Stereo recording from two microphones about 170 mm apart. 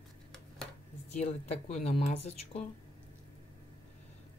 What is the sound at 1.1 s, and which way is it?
Speech, 40° left (ahead or behind).